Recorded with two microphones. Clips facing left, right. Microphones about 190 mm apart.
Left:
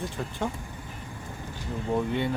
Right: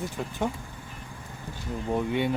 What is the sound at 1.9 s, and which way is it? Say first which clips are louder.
Speech: right 1 dB; 15° right (ahead or behind).